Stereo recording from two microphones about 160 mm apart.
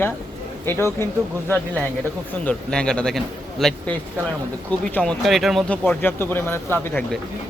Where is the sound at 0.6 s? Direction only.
15° left (ahead or behind).